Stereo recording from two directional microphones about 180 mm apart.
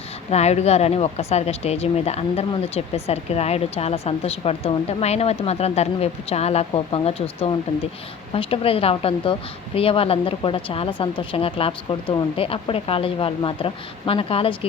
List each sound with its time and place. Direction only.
0.3 s speech: 35° left (ahead or behind)